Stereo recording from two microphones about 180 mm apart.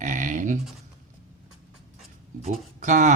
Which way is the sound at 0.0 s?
45° right (ahead or behind).